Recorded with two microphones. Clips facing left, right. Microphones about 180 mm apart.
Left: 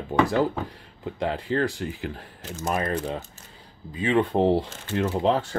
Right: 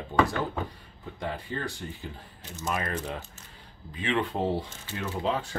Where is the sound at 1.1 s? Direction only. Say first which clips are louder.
Left 9 dB; 80° left.